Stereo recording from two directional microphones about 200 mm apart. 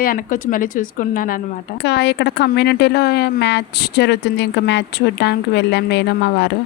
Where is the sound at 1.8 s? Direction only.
60° left (ahead or behind).